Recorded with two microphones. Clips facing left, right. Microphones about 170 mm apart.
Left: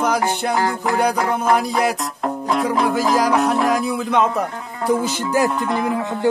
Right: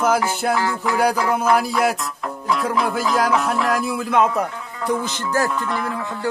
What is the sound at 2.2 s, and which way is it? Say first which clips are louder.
Music: left 3 dB; 35° left (ahead or behind).